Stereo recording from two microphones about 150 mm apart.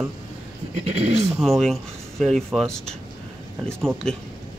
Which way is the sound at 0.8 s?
45° right (ahead or behind).